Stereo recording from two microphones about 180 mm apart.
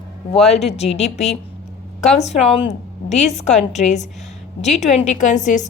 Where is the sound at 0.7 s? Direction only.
35° left (ahead or behind).